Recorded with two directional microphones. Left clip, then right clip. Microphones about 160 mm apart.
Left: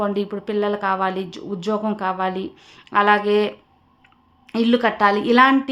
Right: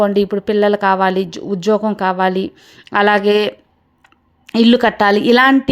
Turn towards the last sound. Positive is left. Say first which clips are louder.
# right 4 dB
turn(degrees=-45)  # may be behind; listen again after turning